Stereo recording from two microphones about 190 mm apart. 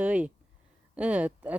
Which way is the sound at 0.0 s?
5° right (ahead or behind).